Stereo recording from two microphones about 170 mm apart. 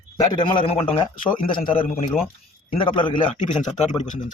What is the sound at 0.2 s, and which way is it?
A man's voice, 25° left (ahead or behind).